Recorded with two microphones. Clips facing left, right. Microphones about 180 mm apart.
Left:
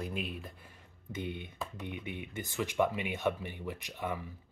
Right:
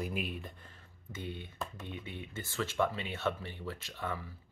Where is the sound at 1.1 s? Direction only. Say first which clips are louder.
Left 3 dB; 20° left (ahead or behind).